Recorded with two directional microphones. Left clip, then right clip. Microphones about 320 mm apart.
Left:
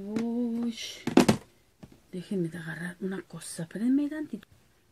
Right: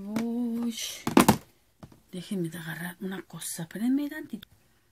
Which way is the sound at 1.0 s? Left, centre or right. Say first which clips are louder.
Right 2 dB; right.